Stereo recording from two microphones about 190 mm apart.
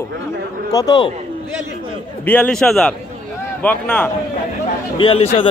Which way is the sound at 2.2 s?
10° left (ahead or behind).